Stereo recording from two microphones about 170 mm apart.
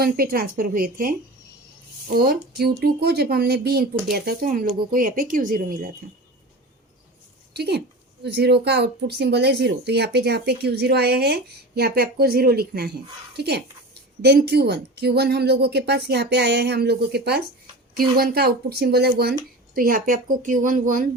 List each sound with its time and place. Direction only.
0.0 s speech: 60° right (ahead or behind)
2.1 s speech: 65° right (ahead or behind)
7.5 s speech: 75° right (ahead or behind)
19.7 s a woman's voice: 55° right (ahead or behind)